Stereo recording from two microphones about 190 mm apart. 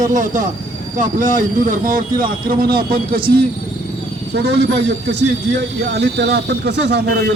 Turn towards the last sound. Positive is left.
turn(degrees=-65)  # may be behind; listen again after turning